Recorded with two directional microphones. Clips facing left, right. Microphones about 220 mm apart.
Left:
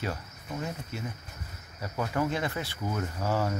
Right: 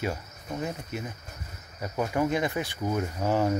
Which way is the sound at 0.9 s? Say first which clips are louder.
Right 2 dB; 15° right (ahead or behind).